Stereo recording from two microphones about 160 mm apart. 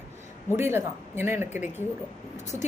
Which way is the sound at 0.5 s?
15° right (ahead or behind).